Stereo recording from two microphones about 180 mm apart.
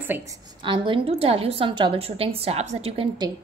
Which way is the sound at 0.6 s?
25° right (ahead or behind).